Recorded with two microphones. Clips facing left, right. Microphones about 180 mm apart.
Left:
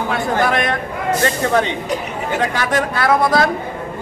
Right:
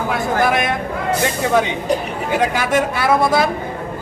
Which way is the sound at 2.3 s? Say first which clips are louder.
Right 2 dB; 10° right (ahead or behind).